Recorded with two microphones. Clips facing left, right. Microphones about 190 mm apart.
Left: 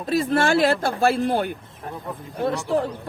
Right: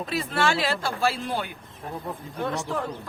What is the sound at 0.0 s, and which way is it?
Speech, 40° left (ahead or behind).